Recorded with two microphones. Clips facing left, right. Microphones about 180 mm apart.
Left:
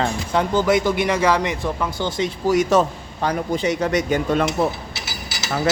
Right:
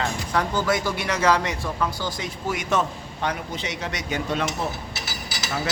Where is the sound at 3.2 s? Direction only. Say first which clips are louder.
Left 8 dB; 45° left (ahead or behind).